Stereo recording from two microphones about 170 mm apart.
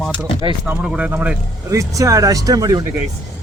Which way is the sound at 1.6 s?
20° right (ahead or behind).